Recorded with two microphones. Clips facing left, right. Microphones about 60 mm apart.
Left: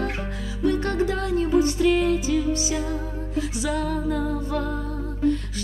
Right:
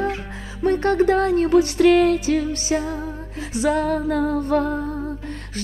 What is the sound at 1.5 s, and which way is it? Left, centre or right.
Music, right.